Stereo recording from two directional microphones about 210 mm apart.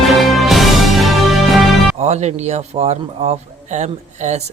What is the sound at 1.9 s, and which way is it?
A man's voice, 30° right (ahead or behind).